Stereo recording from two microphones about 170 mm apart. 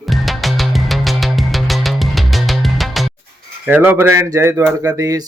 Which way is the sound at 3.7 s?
10° right (ahead or behind).